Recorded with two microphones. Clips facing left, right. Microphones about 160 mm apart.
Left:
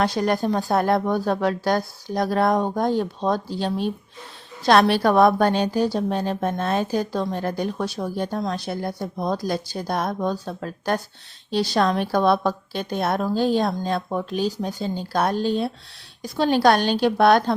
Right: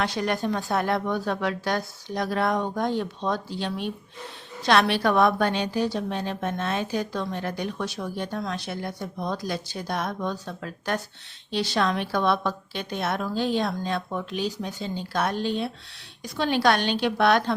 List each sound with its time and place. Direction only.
0.0 s speech: 40° left (ahead or behind)